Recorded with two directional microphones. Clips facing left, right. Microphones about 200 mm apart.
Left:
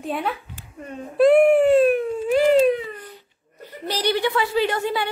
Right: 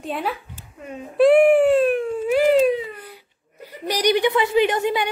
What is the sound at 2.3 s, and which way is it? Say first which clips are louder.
Baby cry: even; 5° right (ahead or behind).